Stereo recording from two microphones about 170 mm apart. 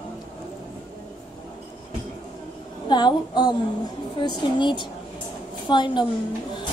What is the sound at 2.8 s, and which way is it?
Speech, 25° left (ahead or behind).